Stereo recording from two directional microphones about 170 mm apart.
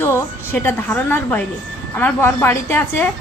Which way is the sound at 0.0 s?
15° left (ahead or behind).